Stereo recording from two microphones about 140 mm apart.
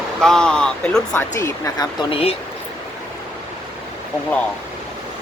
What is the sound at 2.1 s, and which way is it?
Speech, 45° left (ahead or behind).